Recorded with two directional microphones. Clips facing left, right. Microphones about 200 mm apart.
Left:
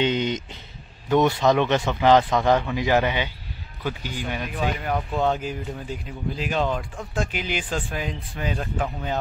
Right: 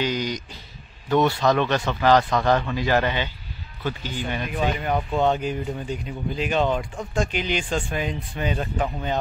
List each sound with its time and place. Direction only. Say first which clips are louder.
0.0 s a man's voice: left 3 dB; 25° left (ahead or behind); by 9.2 s centre (ahead or behind)